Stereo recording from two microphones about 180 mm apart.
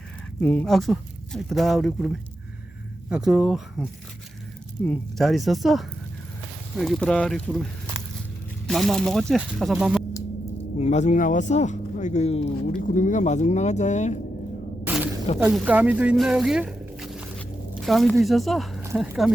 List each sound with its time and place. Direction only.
0.3 s speech: 10° left (ahead or behind)
4.9 s speech: centre (ahead or behind)
10.8 s speech: 40° left (ahead or behind)
12.8 s speech: 45° left (ahead or behind)
14.8 s a sound: 10° right (ahead or behind)
15.4 s speech: 10° right (ahead or behind)